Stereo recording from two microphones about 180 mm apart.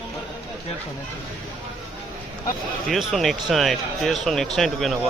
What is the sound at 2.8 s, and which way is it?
Speech, centre (ahead or behind).